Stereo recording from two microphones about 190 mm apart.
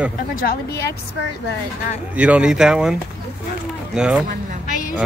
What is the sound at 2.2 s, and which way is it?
Speech, 5° right (ahead or behind).